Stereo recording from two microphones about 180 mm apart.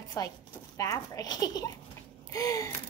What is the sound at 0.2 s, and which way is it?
A woman's voice, 20° left (ahead or behind).